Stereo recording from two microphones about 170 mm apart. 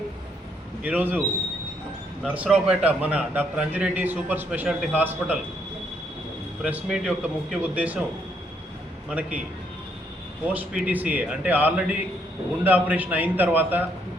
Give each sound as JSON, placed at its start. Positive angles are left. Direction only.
{"t": 0.8, "sound": "a man's voice", "side_deg": -10}
{"t": 2.2, "sound": "a man's voice", "side_deg": -10}
{"t": 6.6, "sound": "speech", "side_deg": 0}
{"t": 9.0, "sound": "a man's voice", "side_deg": -10}
{"t": 10.4, "sound": "a man's voice", "side_deg": -10}